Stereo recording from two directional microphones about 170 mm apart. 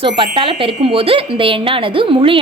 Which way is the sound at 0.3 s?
30° right (ahead or behind).